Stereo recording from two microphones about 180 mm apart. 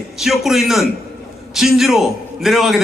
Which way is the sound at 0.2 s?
Centre (ahead or behind).